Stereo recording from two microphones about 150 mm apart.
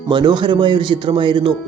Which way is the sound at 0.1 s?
30° right (ahead or behind).